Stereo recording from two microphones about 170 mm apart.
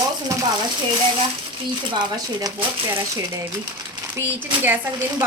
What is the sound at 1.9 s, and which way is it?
Speech, 25° right (ahead or behind).